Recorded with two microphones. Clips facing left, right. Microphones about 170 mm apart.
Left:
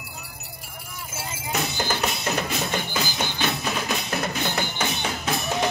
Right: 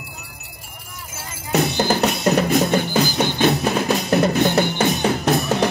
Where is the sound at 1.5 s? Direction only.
40° right (ahead or behind).